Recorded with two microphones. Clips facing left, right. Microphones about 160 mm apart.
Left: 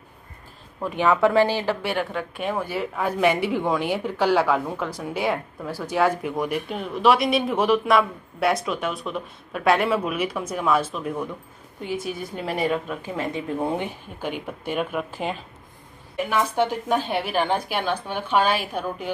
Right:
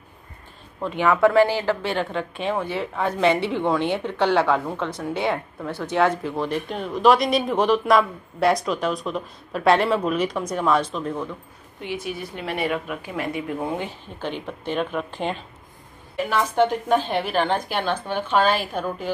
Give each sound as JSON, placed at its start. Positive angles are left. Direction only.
{"t": 0.8, "sound": "a woman's voice", "side_deg": 15}
{"t": 11.8, "sound": "speech", "side_deg": 45}
{"t": 12.6, "sound": "speech", "side_deg": -5}
{"t": 13.1, "sound": "a woman's voice", "side_deg": 25}